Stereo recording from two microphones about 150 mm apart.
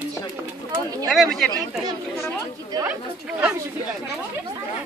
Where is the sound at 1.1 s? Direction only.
Centre (ahead or behind).